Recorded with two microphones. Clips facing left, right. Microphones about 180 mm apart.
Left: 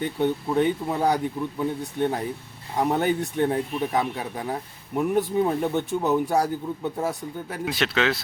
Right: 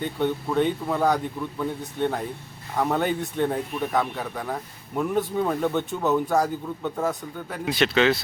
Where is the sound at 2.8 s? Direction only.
15° left (ahead or behind).